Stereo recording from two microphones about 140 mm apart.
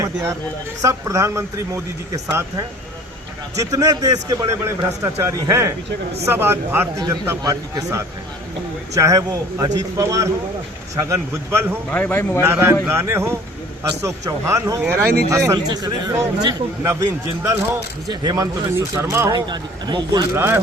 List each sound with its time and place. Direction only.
0.8 s a man's voice: 20° right (ahead or behind)
3.5 s a man's voice: 25° right (ahead or behind)
11.9 s a man's voice: 10° left (ahead or behind)
12.4 s a man's voice: 15° right (ahead or behind)
18.1 s a man's voice: 30° right (ahead or behind)
19.3 s speech: 30° right (ahead or behind)
20.3 s speech: 15° right (ahead or behind)